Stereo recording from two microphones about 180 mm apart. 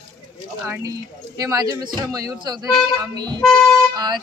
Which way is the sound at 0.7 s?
20° right (ahead or behind).